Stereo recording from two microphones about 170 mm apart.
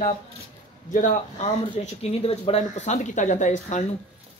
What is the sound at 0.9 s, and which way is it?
Speech, 50° left (ahead or behind).